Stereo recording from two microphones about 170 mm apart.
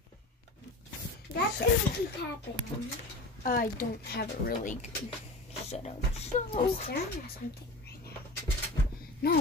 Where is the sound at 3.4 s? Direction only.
60° left (ahead or behind).